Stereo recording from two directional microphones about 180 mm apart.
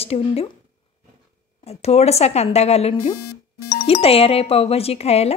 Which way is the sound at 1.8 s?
35° left (ahead or behind).